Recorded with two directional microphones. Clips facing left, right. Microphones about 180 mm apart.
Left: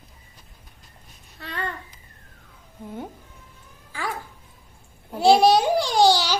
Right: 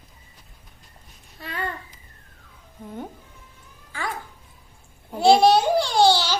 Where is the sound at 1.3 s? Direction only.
5° right (ahead or behind).